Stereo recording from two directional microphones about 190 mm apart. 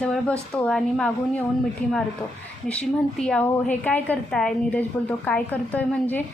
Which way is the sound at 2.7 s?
5° left (ahead or behind).